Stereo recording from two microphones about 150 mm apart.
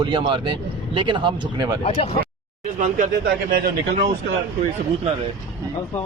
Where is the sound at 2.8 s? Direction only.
75° right (ahead or behind).